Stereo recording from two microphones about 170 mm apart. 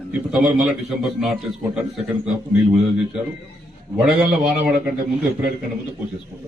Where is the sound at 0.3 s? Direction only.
Centre (ahead or behind).